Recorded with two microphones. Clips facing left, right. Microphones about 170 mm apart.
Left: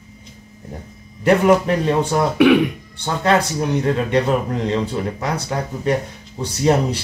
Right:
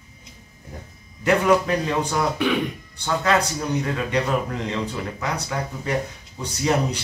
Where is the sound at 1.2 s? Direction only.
30° left (ahead or behind).